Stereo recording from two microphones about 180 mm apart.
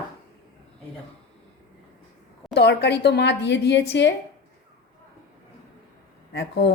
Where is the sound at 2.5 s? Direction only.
65° left (ahead or behind).